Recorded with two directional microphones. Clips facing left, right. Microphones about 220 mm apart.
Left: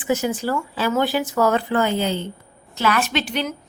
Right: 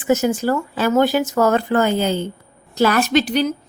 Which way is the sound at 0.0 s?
45° right (ahead or behind).